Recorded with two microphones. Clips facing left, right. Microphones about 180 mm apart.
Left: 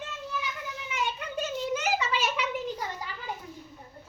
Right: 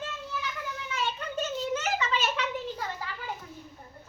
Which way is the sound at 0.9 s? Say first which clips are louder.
Left 1 dB; 15° left (ahead or behind).